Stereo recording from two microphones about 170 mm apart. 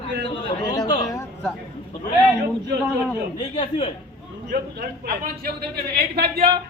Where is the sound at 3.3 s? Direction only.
30° left (ahead or behind).